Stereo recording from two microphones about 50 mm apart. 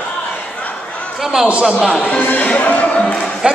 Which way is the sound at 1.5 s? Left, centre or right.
Right.